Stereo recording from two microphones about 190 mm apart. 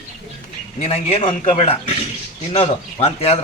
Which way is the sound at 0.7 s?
30° left (ahead or behind).